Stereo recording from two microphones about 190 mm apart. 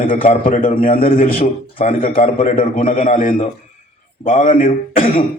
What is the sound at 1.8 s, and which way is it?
A man's voice, 35° left (ahead or behind).